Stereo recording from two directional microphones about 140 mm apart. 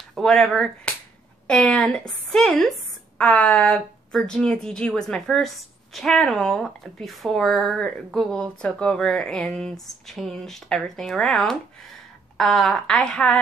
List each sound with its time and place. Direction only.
0.1 s speech: 5° left (ahead or behind)